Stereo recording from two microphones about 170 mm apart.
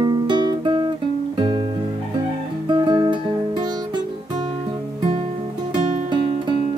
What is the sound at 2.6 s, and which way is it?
Music, 25° right (ahead or behind).